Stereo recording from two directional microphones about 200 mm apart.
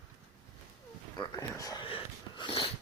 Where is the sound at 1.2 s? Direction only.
15° left (ahead or behind).